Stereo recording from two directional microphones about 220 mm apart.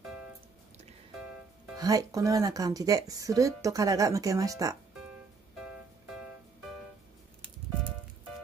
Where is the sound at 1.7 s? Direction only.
15° right (ahead or behind).